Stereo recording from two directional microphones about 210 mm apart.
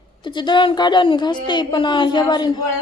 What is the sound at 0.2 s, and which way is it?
A woman's voice, 20° left (ahead or behind).